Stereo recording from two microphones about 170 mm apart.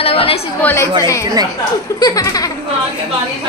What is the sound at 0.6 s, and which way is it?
Speech, 10° left (ahead or behind).